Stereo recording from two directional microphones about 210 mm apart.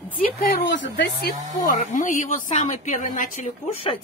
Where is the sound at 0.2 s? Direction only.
45° left (ahead or behind).